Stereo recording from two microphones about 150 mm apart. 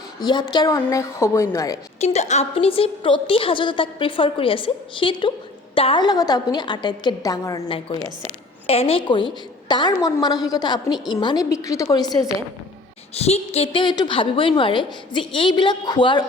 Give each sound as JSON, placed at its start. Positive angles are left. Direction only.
{"t": 0.2, "sound": "a woman's voice", "side_deg": 30}
{"t": 2.0, "sound": "a woman's voice", "side_deg": 50}
{"t": 8.6, "sound": "a woman's voice", "side_deg": 40}
{"t": 13.1, "sound": "a woman's voice", "side_deg": 45}